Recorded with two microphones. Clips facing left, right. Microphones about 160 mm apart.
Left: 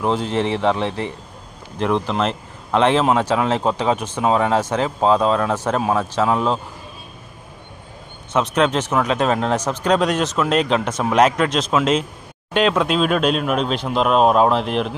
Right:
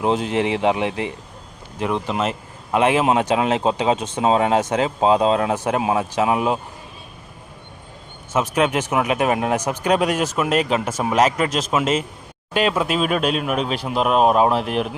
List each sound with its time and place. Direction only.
0.0 s a man's voice: 20° right (ahead or behind)
1.8 s a man's voice: 5° right (ahead or behind)
8.3 s a man's voice: 5° right (ahead or behind)